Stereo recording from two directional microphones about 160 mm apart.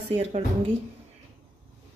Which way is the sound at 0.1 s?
40° right (ahead or behind).